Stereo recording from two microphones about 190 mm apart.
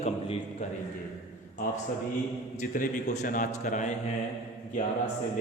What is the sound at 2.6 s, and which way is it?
A man's voice, 40° left (ahead or behind).